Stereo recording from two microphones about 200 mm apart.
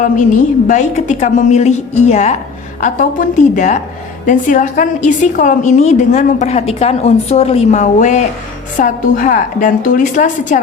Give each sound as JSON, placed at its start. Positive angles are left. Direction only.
{"t": 0.0, "sound": "a woman's voice", "side_deg": 40}